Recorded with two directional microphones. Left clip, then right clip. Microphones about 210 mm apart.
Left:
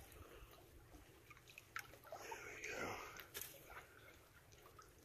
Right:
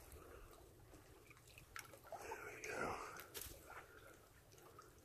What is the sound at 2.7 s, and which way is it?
Whispering, 10° right (ahead or behind).